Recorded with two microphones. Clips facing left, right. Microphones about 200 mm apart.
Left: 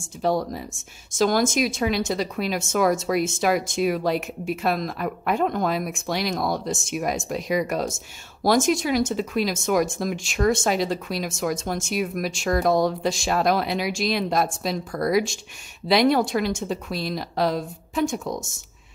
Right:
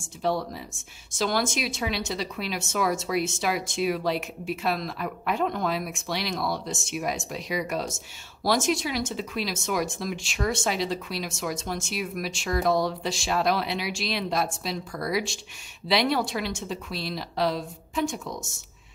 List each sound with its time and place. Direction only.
0.2 s speech: 45° left (ahead or behind)